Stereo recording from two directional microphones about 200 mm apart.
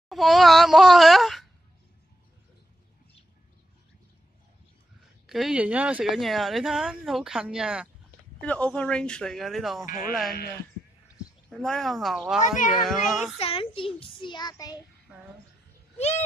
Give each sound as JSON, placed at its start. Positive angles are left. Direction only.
{"t": 0.1, "sound": "speech", "side_deg": 0}
{"t": 5.2, "sound": "speech", "side_deg": 0}
{"t": 8.4, "sound": "speech", "side_deg": 5}
{"t": 9.8, "sound": "speech", "side_deg": 40}
{"t": 11.5, "sound": "speech", "side_deg": 0}
{"t": 13.4, "sound": "a child's voice", "side_deg": 30}